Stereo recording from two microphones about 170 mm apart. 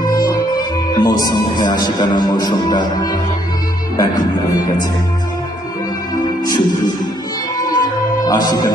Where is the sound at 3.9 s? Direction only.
25° left (ahead or behind).